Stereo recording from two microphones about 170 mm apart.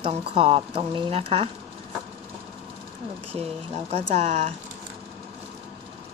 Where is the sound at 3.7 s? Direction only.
40° right (ahead or behind).